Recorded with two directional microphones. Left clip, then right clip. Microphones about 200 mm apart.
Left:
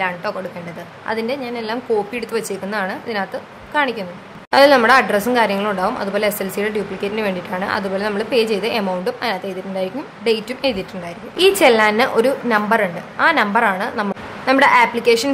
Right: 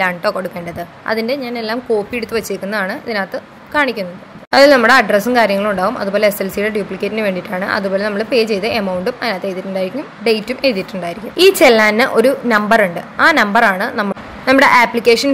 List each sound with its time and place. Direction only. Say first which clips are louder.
0.0 s a woman's voice: right 6 dB; 25° right (ahead or behind)